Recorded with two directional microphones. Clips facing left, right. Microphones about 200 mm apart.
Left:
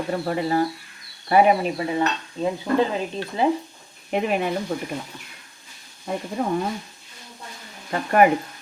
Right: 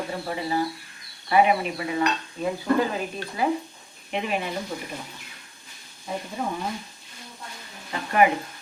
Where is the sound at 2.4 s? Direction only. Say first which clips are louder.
Left 2 dB; 25° left (ahead or behind).